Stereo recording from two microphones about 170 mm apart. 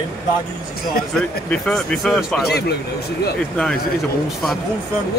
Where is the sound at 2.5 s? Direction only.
70° left (ahead or behind).